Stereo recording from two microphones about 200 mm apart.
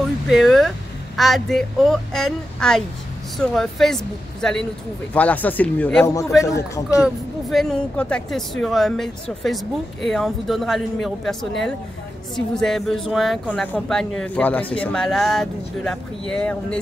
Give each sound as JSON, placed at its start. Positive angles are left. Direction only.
{"t": 0.3, "sound": "speech", "side_deg": 0}
{"t": 7.0, "sound": "speech", "side_deg": 0}